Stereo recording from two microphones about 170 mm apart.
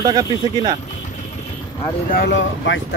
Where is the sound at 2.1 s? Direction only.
80° left.